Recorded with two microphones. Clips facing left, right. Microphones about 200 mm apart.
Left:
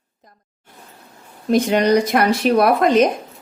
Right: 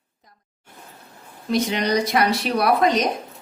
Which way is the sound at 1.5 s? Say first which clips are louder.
Left 6 dB; 50° left (ahead or behind).